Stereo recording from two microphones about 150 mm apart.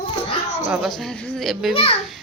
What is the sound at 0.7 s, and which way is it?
A woman's voice, centre (ahead or behind).